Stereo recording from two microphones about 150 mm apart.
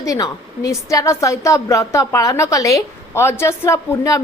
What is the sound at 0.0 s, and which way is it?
A woman's voice, 20° left (ahead or behind).